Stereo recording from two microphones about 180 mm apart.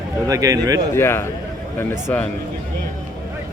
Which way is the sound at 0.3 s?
20° right (ahead or behind).